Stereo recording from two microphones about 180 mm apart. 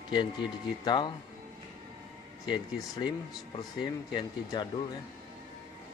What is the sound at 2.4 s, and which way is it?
Speech, 25° left (ahead or behind).